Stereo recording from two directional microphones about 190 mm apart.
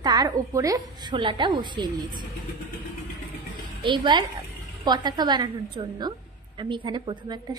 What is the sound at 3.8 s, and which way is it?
A woman's voice, 25° right (ahead or behind).